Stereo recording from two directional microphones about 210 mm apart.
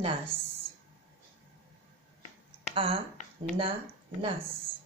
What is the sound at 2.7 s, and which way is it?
Speech, 25° right (ahead or behind).